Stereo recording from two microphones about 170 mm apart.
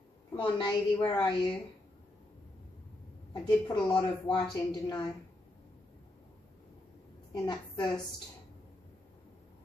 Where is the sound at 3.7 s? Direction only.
5° left (ahead or behind).